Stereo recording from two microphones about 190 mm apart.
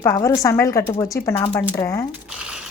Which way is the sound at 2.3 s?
5° right (ahead or behind).